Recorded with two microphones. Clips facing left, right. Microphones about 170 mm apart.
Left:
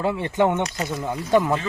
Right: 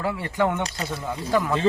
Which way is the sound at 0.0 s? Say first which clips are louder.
Left 3 dB; 25° left (ahead or behind).